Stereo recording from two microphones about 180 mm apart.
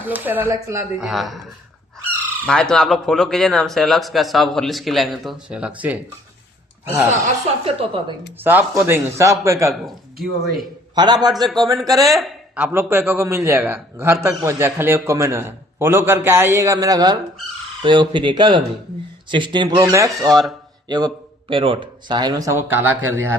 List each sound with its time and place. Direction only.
0.0 s a man's voice: 10° right (ahead or behind)
1.0 s speech: centre (ahead or behind)
7.6 s a woman's voice: 30° right (ahead or behind)
8.4 s a man's voice: 10° right (ahead or behind)
9.8 s speech: centre (ahead or behind)
10.9 s speech: 25° right (ahead or behind)
12.0 s a man's voice: centre (ahead or behind)